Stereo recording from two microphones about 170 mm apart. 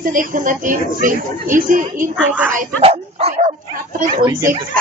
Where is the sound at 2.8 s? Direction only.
35° right (ahead or behind).